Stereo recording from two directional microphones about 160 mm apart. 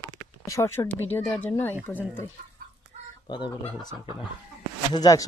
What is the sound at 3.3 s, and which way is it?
Speech, 25° left (ahead or behind).